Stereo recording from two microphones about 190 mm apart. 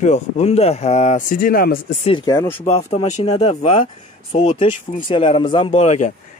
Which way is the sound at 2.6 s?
35° left (ahead or behind).